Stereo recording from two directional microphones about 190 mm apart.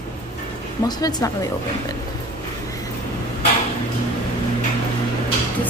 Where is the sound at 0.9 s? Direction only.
20° left (ahead or behind).